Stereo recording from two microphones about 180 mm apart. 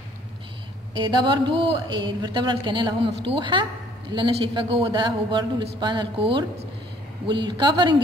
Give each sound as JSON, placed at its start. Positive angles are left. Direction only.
{"t": 0.9, "sound": "a man's voice", "side_deg": -25}
{"t": 7.4, "sound": "a man's voice", "side_deg": -25}